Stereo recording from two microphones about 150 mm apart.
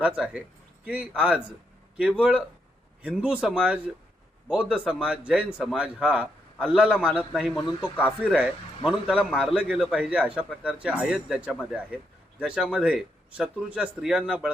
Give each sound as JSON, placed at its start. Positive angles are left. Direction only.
{"t": 0.0, "sound": "a man's voice", "side_deg": -10}